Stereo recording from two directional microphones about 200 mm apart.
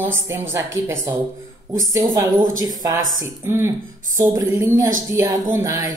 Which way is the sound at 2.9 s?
40° right (ahead or behind).